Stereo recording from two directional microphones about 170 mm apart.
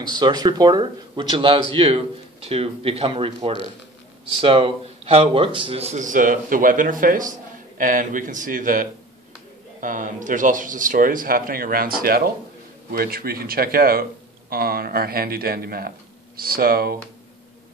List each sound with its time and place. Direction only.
0.1 s speech: 25° right (ahead or behind); by 17.0 s 60° right (ahead or behind)